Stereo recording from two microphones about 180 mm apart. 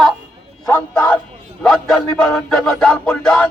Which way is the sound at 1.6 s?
Centre (ahead or behind).